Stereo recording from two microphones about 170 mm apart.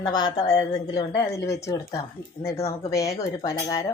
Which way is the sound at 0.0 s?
25° left (ahead or behind).